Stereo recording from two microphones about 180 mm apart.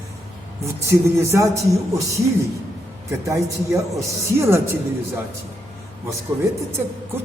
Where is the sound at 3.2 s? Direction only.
15° right (ahead or behind).